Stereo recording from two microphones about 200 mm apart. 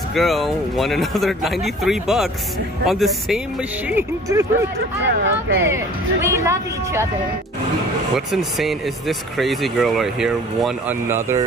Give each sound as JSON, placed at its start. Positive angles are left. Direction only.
{"t": 0.1, "sound": "speech", "side_deg": 0}
{"t": 3.9, "sound": "a woman's voice", "side_deg": -15}
{"t": 5.0, "sound": "speech", "side_deg": -65}
{"t": 6.2, "sound": "a woman's voice", "side_deg": -15}
{"t": 8.3, "sound": "speech", "side_deg": 0}